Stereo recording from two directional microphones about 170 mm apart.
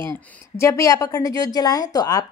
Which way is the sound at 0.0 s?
15° left (ahead or behind).